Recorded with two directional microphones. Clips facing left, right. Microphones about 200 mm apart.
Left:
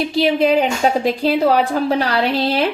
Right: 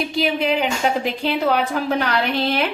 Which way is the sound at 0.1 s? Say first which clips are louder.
Left 7 dB; 35° left (ahead or behind).